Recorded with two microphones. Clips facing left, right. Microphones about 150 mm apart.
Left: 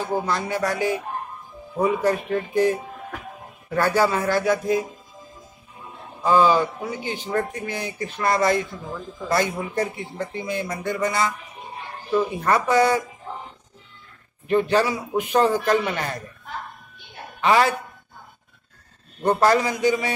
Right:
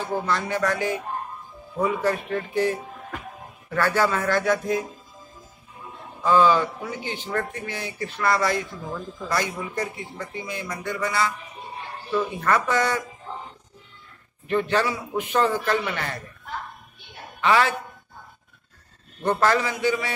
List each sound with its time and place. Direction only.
0.1 s speech: 15° left (ahead or behind)
6.2 s speech: 15° left (ahead or behind)
14.5 s speech: 10° left (ahead or behind)
17.4 s a woman's voice: 15° left (ahead or behind)
19.2 s speech: 15° left (ahead or behind)